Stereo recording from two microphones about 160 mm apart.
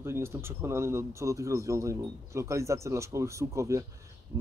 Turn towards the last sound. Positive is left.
turn(degrees=-20)  # may be behind; listen again after turning